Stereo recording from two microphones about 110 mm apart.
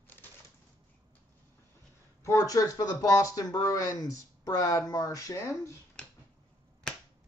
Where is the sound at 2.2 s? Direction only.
30° left (ahead or behind).